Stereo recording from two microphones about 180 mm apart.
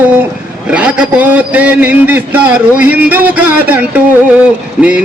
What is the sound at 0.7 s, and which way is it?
A man's voice, 5° right (ahead or behind).